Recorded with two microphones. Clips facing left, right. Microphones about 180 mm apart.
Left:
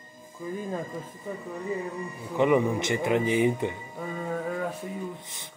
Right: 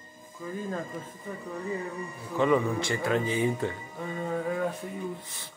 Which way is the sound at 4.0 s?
Centre (ahead or behind).